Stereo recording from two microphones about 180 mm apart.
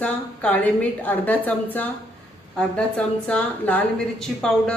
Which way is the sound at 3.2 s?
10° left (ahead or behind).